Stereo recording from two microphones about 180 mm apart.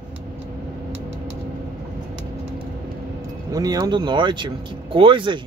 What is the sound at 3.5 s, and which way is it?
Speech, 20° right (ahead or behind).